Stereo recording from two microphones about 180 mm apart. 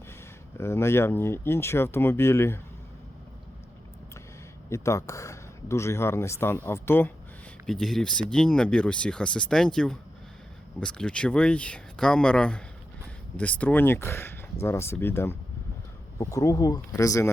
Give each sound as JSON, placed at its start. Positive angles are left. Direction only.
{"t": 0.5, "sound": "speech", "side_deg": 15}
{"t": 4.7, "sound": "speech", "side_deg": 15}